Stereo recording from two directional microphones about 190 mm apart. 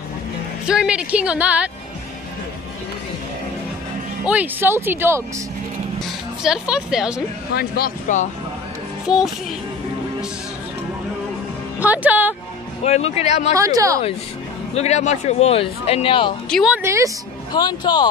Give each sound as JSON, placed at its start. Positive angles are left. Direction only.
{"t": 0.7, "sound": "speech", "side_deg": -5}
{"t": 4.3, "sound": "speech", "side_deg": -10}
{"t": 6.4, "sound": "speech", "side_deg": -5}
{"t": 7.5, "sound": "speech", "side_deg": 55}
{"t": 9.0, "sound": "speech", "side_deg": -5}
{"t": 11.8, "sound": "speech", "side_deg": -10}
{"t": 12.8, "sound": "speech", "side_deg": 35}
{"t": 13.6, "sound": "speech", "side_deg": -15}
{"t": 14.7, "sound": "speech", "side_deg": 35}
{"t": 16.4, "sound": "speech", "side_deg": 0}
{"t": 16.7, "sound": "speech", "side_deg": -15}
{"t": 17.5, "sound": "speech", "side_deg": 20}